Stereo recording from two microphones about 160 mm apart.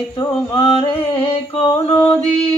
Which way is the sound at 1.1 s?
35° left (ahead or behind).